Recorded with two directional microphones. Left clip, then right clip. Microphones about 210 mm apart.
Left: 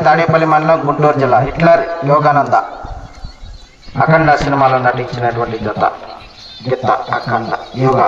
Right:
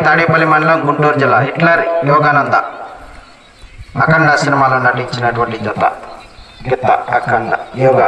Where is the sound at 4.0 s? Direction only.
35° left (ahead or behind).